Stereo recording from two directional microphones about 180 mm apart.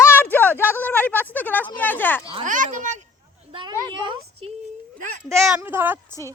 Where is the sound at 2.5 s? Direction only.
45° right (ahead or behind).